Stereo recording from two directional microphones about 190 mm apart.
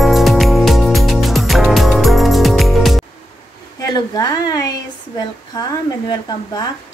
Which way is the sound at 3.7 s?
20° left (ahead or behind).